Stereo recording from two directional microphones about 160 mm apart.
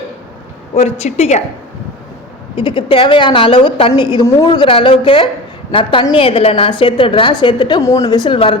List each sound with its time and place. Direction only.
0.7 s a woman's voice: 40° left (ahead or behind)
2.6 s a woman's voice: 30° left (ahead or behind)